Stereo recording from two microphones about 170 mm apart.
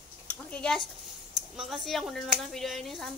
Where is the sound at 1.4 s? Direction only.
Centre (ahead or behind).